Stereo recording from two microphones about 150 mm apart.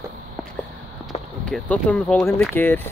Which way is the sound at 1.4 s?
5° left (ahead or behind).